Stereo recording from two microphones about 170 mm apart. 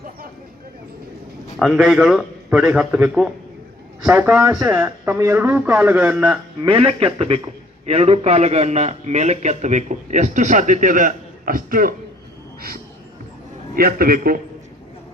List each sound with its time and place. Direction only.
1.5 s a man's voice: centre (ahead or behind)
6.6 s a man's voice: 30° right (ahead or behind); by 11.9 s 55° right (ahead or behind)
13.7 s a man's voice: 60° right (ahead or behind)